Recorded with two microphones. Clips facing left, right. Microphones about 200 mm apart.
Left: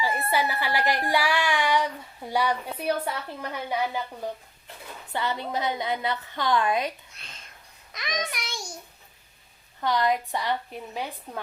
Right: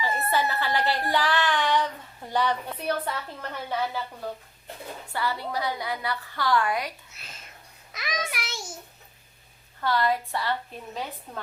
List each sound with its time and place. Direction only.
0.0 s a woman's voice: 10° left (ahead or behind)
5.1 s a woman's voice: 20° left (ahead or behind)
7.1 s a child's voice: 5° right (ahead or behind)
9.8 s a woman's voice: 15° left (ahead or behind)